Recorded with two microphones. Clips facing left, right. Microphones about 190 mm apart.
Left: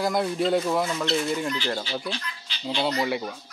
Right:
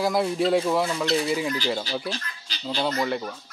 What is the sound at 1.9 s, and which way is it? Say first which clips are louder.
Speech: right 1 dB; 40° right (ahead or behind).